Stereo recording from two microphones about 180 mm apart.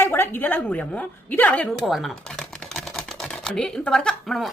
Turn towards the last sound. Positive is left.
turn(degrees=0)  # may be behind; listen again after turning